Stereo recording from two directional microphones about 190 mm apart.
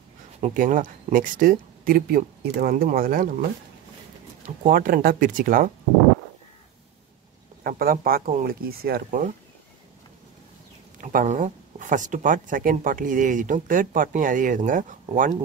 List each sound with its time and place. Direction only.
0.4 s speech: 45° right (ahead or behind)
4.6 s speech: 50° right (ahead or behind)
7.6 s speech: 50° right (ahead or behind)
11.0 s speech: 45° right (ahead or behind)